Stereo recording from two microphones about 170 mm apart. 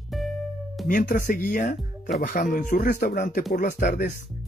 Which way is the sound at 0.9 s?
55° left (ahead or behind).